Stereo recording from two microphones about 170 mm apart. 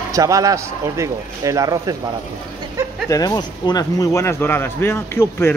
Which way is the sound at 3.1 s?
20° left (ahead or behind).